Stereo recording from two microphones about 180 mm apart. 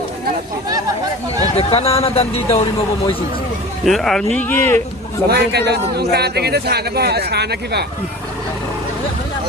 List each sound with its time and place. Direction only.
1.5 s speech: 35° left (ahead or behind)
3.8 s speech: centre (ahead or behind)
5.3 s a man's voice: 65° right (ahead or behind)